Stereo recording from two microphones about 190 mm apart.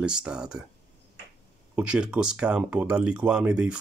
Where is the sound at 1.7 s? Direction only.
5° right (ahead or behind).